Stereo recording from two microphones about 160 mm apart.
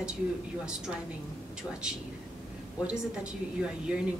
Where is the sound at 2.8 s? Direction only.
5° right (ahead or behind).